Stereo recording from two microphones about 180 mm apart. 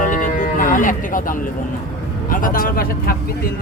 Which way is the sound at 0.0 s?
45° left (ahead or behind).